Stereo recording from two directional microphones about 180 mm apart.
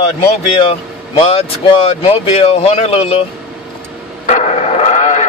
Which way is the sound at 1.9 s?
35° left (ahead or behind).